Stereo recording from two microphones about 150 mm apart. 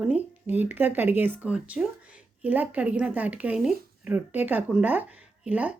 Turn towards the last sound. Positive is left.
turn(degrees=-10)  # may be behind; listen again after turning